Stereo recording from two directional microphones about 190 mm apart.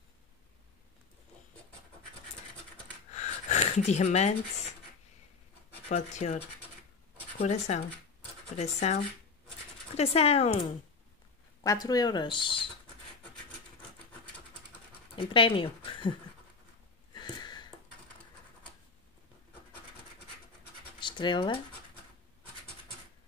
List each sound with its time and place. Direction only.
3.1 s a sound: 35° left (ahead or behind)
5.9 s speech: 40° left (ahead or behind)
9.9 s speech: 30° left (ahead or behind)
11.6 s speech: 20° left (ahead or behind)
15.1 s speech: 25° left (ahead or behind)
17.1 s a sound: 25° left (ahead or behind)
21.0 s speech: 25° left (ahead or behind)